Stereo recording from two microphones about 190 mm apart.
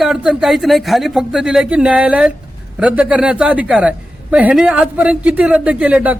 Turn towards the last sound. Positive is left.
turn(degrees=-5)  # may be behind; listen again after turning